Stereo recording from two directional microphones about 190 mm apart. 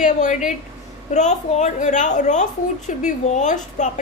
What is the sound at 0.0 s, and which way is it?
A woman's voice, 40° left (ahead or behind).